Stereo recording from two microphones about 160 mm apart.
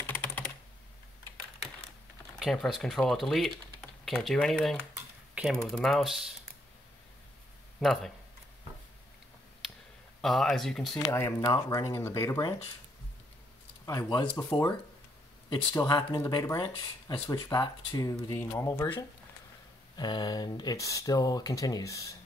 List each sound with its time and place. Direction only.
0.0 s computer keyboard: 10° left (ahead or behind)
2.3 s speech: centre (ahead or behind)
5.3 s typing: 5° right (ahead or behind)
5.7 s speech: centre (ahead or behind)
7.8 s speech: centre (ahead or behind)
10.2 s speech: centre (ahead or behind)
11.0 s speech: 20° left (ahead or behind)
13.8 s speech: 25° left (ahead or behind)
15.5 s speech: 25° left (ahead or behind)